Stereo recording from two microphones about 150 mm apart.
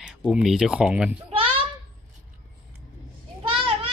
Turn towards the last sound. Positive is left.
turn(degrees=-35)  # may be behind; listen again after turning